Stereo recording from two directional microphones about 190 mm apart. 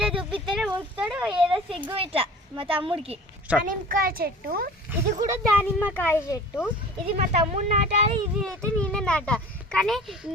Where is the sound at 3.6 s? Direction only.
50° right (ahead or behind).